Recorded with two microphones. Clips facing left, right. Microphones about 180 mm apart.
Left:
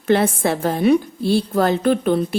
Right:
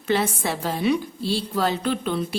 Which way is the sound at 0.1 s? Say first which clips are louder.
Left 6 dB; 55° left (ahead or behind).